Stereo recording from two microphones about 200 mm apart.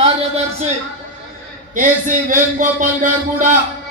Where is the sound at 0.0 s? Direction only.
30° right (ahead or behind).